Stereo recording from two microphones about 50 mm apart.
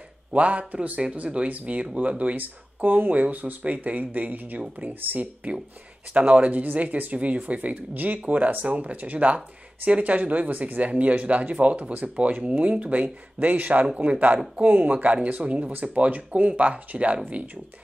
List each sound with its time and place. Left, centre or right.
0.3 s speech: right